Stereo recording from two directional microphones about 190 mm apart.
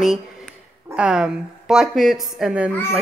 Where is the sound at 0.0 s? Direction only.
Centre (ahead or behind).